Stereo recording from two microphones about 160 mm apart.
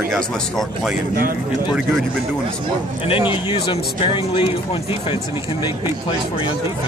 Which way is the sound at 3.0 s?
35° left (ahead or behind).